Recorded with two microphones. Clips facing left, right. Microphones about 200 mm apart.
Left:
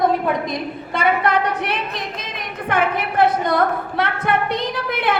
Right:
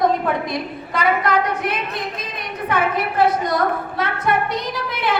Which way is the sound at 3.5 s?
60° left (ahead or behind).